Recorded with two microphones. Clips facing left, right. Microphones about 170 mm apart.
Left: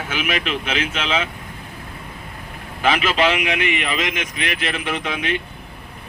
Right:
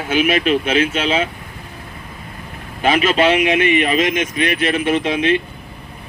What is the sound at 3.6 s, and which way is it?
Speech, 25° right (ahead or behind).